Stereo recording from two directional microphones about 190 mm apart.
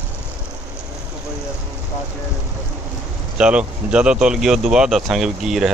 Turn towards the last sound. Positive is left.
turn(degrees=0)  # may be behind; listen again after turning